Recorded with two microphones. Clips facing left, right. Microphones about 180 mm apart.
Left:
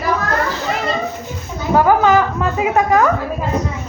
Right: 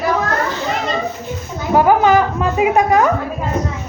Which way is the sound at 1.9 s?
20° right (ahead or behind).